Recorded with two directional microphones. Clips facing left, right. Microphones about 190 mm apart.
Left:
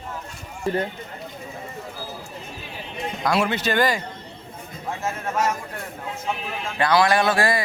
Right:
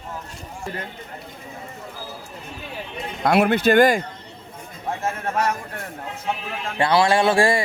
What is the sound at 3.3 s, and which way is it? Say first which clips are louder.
Speech: right 6 dB; 55° right (ahead or behind).